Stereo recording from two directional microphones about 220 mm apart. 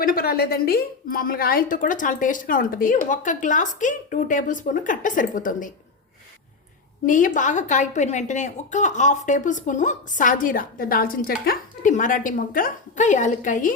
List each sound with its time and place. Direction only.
0.0 s a woman's voice: 40° left (ahead or behind)
7.0 s a woman's voice: 35° left (ahead or behind)